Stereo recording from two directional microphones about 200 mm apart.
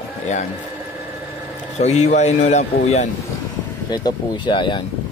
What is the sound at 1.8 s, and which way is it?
Speech, 35° left (ahead or behind).